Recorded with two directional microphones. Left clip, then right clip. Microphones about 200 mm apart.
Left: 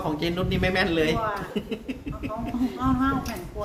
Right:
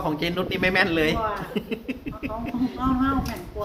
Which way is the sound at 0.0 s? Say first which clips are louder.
Right 1 dB; 25° right (ahead or behind).